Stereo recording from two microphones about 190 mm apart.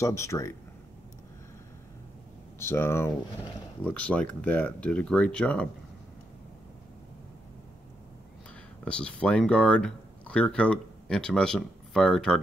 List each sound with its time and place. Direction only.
0.0 s speech: 15° left (ahead or behind)
2.6 s speech: 15° left (ahead or behind)
8.8 s speech: 5° left (ahead or behind)